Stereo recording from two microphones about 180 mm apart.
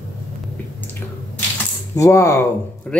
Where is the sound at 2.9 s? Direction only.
5° left (ahead or behind).